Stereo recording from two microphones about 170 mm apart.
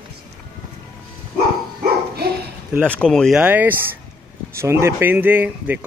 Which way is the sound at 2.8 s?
5° left (ahead or behind).